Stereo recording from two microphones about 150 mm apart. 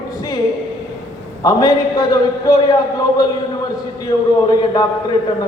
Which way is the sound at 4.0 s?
25° left (ahead or behind).